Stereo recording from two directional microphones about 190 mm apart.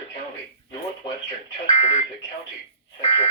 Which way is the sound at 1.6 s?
35° left (ahead or behind).